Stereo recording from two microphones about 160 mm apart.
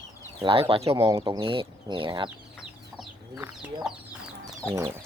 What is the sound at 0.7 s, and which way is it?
Speech, 35° right (ahead or behind).